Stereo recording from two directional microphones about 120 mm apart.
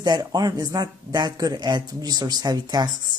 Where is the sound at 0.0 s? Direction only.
35° right (ahead or behind).